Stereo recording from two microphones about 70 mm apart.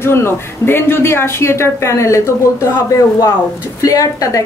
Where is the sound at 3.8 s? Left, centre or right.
Left.